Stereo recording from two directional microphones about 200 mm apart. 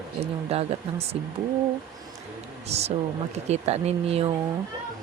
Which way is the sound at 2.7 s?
30° right (ahead or behind).